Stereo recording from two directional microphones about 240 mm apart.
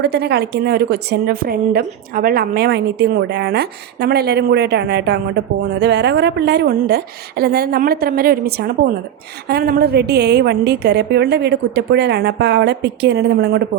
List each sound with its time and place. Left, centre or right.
0.0 s a woman's voice: right